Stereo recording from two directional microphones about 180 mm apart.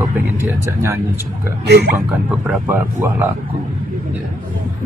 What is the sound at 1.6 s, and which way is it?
Speech, 65° right (ahead or behind).